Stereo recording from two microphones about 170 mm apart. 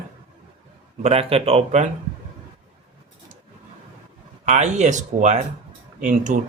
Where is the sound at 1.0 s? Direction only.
35° right (ahead or behind).